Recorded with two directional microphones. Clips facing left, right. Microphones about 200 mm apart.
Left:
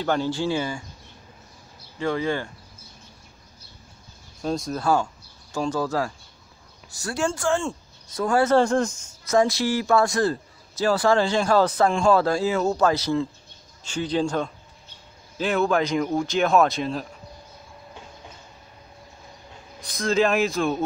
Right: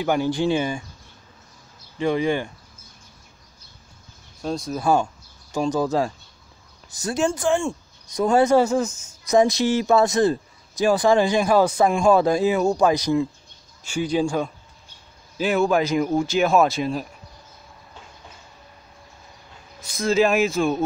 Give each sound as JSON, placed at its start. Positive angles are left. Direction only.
{"t": 0.0, "sound": "speech", "side_deg": -15}
{"t": 2.0, "sound": "speech", "side_deg": -15}
{"t": 4.4, "sound": "speech", "side_deg": 0}
{"t": 5.5, "sound": "speech", "side_deg": -15}
{"t": 8.5, "sound": "speech", "side_deg": -5}
{"t": 20.0, "sound": "speech", "side_deg": -5}